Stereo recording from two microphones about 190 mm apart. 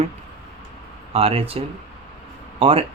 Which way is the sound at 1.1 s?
30° right (ahead or behind).